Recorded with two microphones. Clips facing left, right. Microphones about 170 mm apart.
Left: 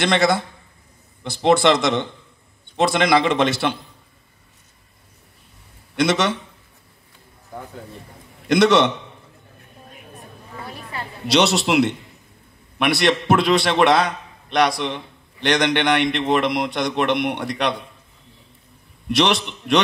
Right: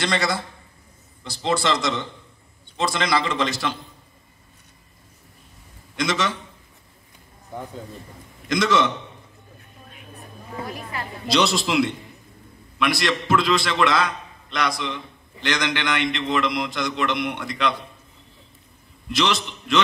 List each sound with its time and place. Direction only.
0.0 s a man's voice: 60° left (ahead or behind)
5.9 s a man's voice: 65° left (ahead or behind)
8.5 s a man's voice: 65° left (ahead or behind)
10.7 s a woman's voice: 30° left (ahead or behind)
11.3 s a man's voice: 65° left (ahead or behind)
19.0 s a man's voice: 60° left (ahead or behind)